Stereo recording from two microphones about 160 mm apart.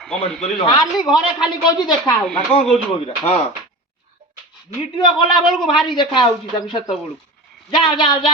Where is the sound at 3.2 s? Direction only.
40° left (ahead or behind).